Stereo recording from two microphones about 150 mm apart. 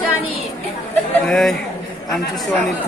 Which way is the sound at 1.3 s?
Centre (ahead or behind).